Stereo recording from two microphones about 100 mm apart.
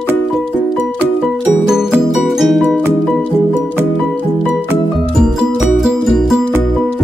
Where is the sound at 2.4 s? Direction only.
Centre (ahead or behind).